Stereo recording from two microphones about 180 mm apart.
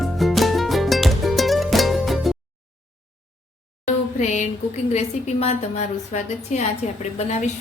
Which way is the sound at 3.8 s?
40° left (ahead or behind).